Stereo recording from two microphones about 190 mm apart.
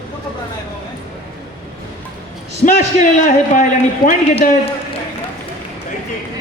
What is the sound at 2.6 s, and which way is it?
A man's voice, 40° left (ahead or behind).